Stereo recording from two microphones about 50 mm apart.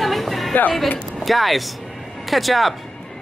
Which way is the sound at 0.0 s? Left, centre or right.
Centre.